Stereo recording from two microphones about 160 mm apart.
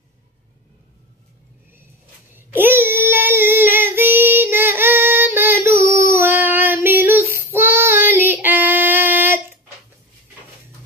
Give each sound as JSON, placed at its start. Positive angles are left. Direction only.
{"t": 2.3, "sound": "child singing", "side_deg": -15}